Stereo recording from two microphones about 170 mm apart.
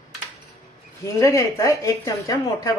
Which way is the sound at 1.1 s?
20° left (ahead or behind).